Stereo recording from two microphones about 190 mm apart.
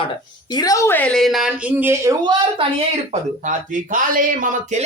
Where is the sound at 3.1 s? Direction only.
40° right (ahead or behind).